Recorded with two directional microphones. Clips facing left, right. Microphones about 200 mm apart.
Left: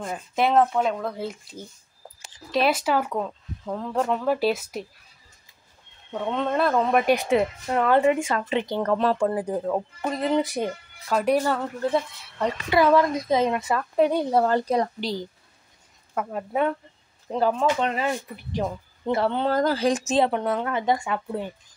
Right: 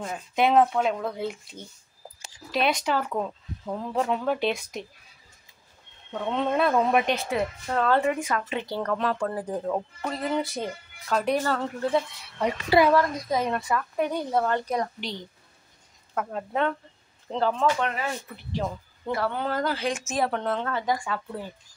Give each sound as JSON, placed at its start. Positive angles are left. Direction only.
{"t": 0.0, "sound": "speech", "side_deg": 0}
{"t": 3.1, "sound": "speech", "side_deg": -5}
{"t": 6.2, "sound": "speech", "side_deg": 0}
{"t": 7.2, "sound": "speech", "side_deg": 20}
{"t": 8.9, "sound": "a woman's voice", "side_deg": 30}
{"t": 9.3, "sound": "speech", "side_deg": 10}
{"t": 12.9, "sound": "a woman's voice", "side_deg": 25}
{"t": 16.2, "sound": "speech", "side_deg": 10}
{"t": 19.5, "sound": "a woman's voice", "side_deg": 40}
{"t": 20.2, "sound": "speech", "side_deg": 10}
{"t": 20.8, "sound": "speech", "side_deg": 25}